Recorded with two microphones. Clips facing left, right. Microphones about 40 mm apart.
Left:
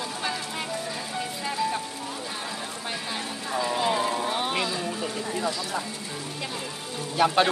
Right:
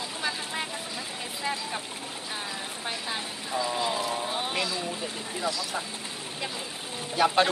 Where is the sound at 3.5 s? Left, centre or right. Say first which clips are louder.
Left 3 dB; centre.